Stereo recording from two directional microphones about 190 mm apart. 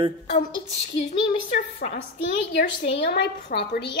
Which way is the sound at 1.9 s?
65° left (ahead or behind).